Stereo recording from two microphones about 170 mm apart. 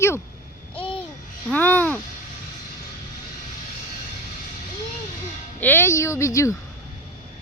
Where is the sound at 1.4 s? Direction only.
10° left (ahead or behind).